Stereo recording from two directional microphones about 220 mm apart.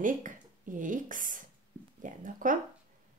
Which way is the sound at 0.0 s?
35° right (ahead or behind).